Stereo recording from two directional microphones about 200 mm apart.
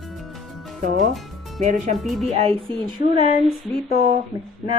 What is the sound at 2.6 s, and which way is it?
Speech, 25° right (ahead or behind).